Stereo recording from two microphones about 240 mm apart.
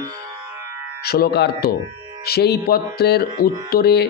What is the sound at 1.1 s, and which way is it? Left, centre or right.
Music, left.